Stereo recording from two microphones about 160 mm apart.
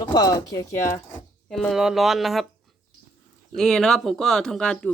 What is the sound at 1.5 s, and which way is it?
Speech, centre (ahead or behind).